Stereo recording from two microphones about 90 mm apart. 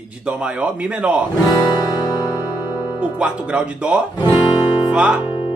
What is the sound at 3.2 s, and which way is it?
Speech, 10° right (ahead or behind).